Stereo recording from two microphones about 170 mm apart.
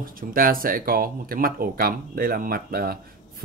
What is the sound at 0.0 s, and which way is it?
Speech, 55° right (ahead or behind).